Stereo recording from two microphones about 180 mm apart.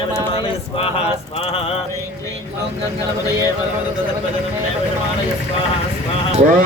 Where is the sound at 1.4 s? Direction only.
30° left (ahead or behind).